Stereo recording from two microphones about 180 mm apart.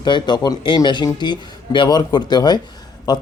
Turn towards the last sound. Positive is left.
turn(degrees=20)  # may be behind; listen again after turning